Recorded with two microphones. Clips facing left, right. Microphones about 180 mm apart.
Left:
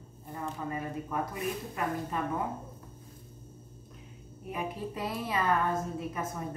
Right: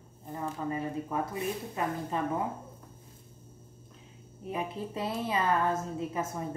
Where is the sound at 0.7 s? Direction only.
25° right (ahead or behind).